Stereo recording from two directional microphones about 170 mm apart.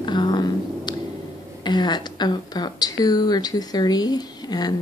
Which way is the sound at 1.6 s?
25° left (ahead or behind).